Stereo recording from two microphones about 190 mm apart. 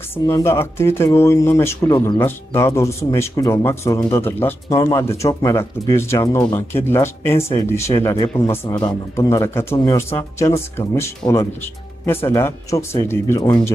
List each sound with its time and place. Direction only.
0.1 s speech: 15° left (ahead or behind)